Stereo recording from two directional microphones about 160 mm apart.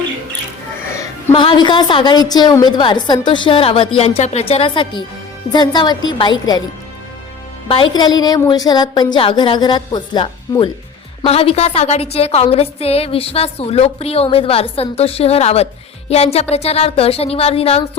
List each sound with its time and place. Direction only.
1.3 s a woman's voice: 35° left (ahead or behind)
7.7 s a woman's voice: 30° left (ahead or behind)